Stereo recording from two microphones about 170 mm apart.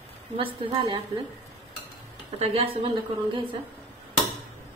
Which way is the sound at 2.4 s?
35° right (ahead or behind).